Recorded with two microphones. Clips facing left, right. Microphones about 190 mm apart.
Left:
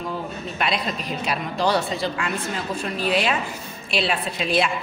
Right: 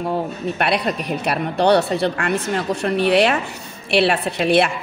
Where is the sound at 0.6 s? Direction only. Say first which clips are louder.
Right 4 dB; 65° right (ahead or behind).